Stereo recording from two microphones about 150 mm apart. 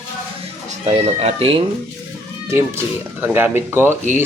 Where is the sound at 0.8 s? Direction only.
45° right (ahead or behind).